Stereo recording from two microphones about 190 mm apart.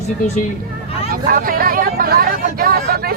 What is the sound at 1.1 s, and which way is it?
Speech, 50° right (ahead or behind).